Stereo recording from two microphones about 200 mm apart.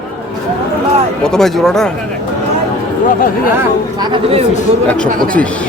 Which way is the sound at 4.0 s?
20° right (ahead or behind).